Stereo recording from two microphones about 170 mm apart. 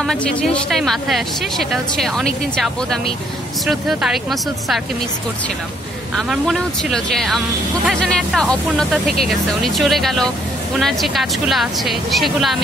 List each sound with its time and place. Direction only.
0.0 s speech: 5° left (ahead or behind)
6.1 s speech: centre (ahead or behind)